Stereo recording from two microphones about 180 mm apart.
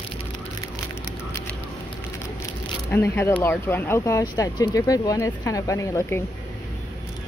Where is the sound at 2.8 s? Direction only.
10° left (ahead or behind).